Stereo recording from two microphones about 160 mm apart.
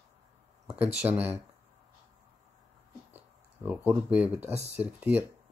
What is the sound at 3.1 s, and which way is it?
Speech, 10° right (ahead or behind).